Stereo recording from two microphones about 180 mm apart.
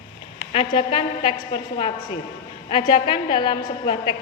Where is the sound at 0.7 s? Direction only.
25° left (ahead or behind).